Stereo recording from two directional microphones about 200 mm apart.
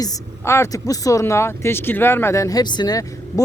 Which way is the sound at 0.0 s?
15° left (ahead or behind).